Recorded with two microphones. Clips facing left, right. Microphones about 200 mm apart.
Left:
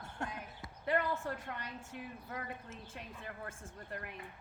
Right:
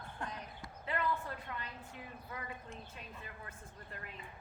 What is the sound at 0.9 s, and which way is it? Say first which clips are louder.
Speech: left 3 dB; 45° left (ahead or behind).